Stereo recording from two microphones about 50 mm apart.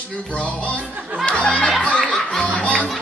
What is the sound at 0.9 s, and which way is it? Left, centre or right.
Speech, right.